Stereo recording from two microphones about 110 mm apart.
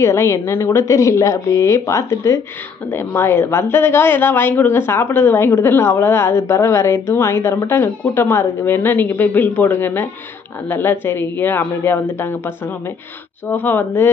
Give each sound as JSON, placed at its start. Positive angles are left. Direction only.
{"t": 0.0, "sound": "a woman's voice", "side_deg": 25}